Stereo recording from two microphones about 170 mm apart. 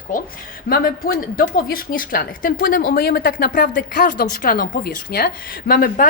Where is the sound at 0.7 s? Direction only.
65° left (ahead or behind).